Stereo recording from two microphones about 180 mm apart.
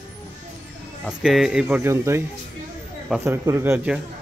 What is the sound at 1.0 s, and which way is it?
Speech, 5° right (ahead or behind).